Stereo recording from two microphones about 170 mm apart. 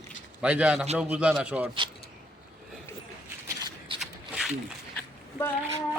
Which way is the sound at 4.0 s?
Centre (ahead or behind).